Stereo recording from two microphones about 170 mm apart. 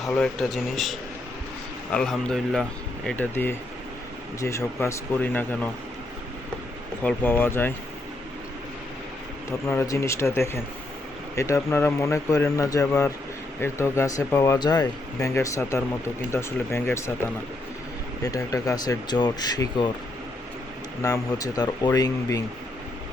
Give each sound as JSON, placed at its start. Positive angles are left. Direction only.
{"t": 0.0, "sound": "speech", "side_deg": 5}
{"t": 7.0, "sound": "speech", "side_deg": 10}
{"t": 9.5, "sound": "speech", "side_deg": 15}
{"t": 18.2, "sound": "speech", "side_deg": 20}
{"t": 21.0, "sound": "speech", "side_deg": 20}